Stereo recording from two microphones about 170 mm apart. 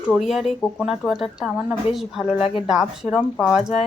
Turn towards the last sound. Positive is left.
turn(degrees=-5)  # may be behind; listen again after turning